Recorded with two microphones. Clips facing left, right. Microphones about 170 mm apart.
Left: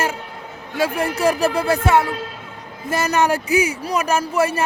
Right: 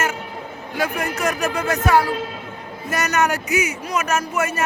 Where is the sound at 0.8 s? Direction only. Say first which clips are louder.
Left 3 dB; 30° left (ahead or behind).